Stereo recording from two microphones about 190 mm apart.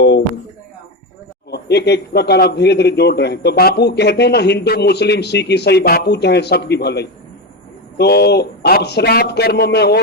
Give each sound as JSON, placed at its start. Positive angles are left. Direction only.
{"t": 1.5, "sound": "speech", "side_deg": 60}